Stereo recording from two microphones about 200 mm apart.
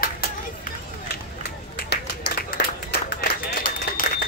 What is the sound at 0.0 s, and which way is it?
Run, 45° left (ahead or behind).